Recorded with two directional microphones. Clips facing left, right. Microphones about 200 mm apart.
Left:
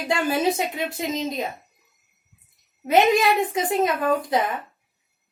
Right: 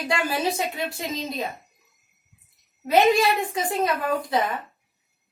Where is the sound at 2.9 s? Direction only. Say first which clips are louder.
Left 1 dB; 20° left (ahead or behind).